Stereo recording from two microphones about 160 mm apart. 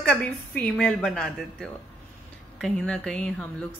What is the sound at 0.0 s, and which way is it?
A woman's voice, 5° left (ahead or behind).